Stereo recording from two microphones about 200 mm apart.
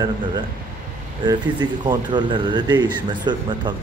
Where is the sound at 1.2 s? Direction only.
20° right (ahead or behind).